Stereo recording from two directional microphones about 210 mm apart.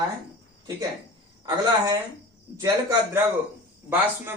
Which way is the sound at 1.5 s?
15° right (ahead or behind).